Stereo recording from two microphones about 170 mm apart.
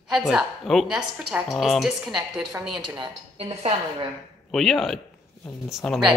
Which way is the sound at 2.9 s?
35° right (ahead or behind).